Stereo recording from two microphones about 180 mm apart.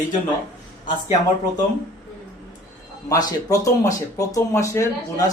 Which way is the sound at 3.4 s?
20° left (ahead or behind).